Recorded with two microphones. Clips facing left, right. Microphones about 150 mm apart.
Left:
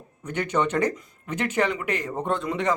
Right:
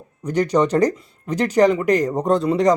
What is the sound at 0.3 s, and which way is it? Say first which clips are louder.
Speech: right 7 dB; 35° right (ahead or behind).